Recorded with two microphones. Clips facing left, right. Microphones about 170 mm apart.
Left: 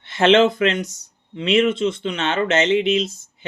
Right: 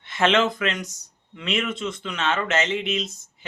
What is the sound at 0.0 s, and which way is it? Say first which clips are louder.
Speech: left 6 dB; 35° left (ahead or behind).